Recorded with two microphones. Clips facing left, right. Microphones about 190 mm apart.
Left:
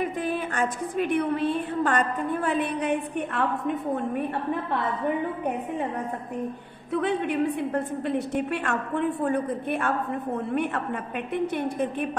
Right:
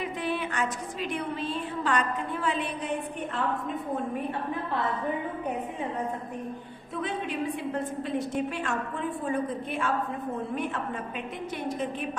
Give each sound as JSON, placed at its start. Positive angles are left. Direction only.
{"t": 0.0, "sound": "a woman's voice", "side_deg": 50}
{"t": 6.9, "sound": "a woman's voice", "side_deg": 65}